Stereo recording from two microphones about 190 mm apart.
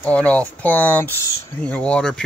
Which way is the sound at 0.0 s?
5° left (ahead or behind).